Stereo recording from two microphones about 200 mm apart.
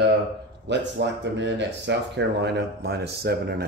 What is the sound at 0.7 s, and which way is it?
Speech, 60° right (ahead or behind).